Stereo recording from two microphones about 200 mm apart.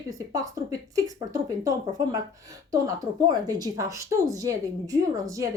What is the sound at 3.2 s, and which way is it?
A woman's voice, 20° right (ahead or behind).